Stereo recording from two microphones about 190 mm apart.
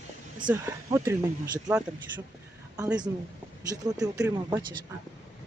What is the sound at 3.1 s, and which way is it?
Speech, 15° right (ahead or behind).